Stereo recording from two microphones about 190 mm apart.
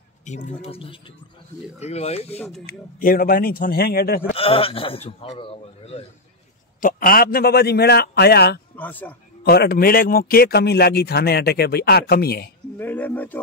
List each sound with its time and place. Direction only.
0.2 s a man's voice: 40° left (ahead or behind)
2.3 s speech: 5° left (ahead or behind)
2.6 s speech: 50° left (ahead or behind)
4.3 s a man's voice: 30° left (ahead or behind)
6.8 s a man's voice: 45° left (ahead or behind)
8.7 s speech: 10° left (ahead or behind)
9.4 s a man's voice: 55° left (ahead or behind)
12.7 s speech: 10° left (ahead or behind)